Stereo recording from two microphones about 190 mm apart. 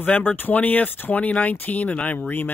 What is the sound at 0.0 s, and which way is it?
Speech, 10° left (ahead or behind).